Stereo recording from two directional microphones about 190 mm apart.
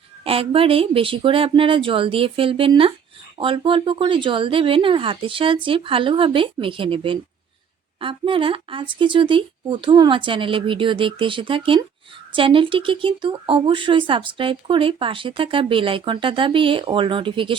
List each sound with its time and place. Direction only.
0.3 s speech: 30° right (ahead or behind)